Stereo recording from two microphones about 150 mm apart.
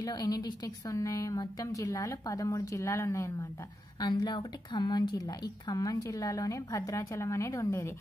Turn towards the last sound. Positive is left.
turn(degrees=20)  # may be behind; listen again after turning